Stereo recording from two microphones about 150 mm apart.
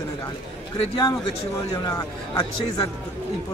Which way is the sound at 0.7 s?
30° left (ahead or behind).